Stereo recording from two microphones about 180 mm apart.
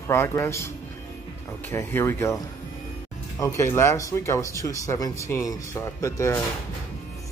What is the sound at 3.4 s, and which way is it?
Speech, 15° left (ahead or behind).